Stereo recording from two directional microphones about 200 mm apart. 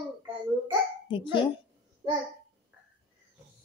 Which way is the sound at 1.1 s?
25° left (ahead or behind).